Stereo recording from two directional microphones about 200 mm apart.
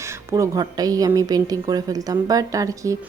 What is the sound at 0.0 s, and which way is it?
Speech, 15° right (ahead or behind).